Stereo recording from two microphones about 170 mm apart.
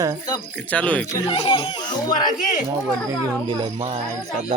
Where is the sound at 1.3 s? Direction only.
25° left (ahead or behind).